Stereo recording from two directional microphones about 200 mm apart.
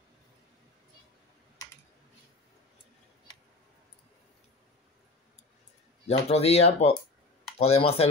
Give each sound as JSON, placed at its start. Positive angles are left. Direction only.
{"t": 6.0, "sound": "speech", "side_deg": 30}